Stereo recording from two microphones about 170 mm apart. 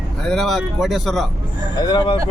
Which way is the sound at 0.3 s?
Centre (ahead or behind).